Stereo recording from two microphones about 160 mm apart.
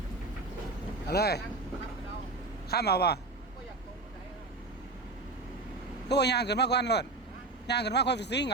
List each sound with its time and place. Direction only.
1.1 s a man's voice: 90° left
2.6 s speech: 80° left
6.1 s a man's voice: 90° left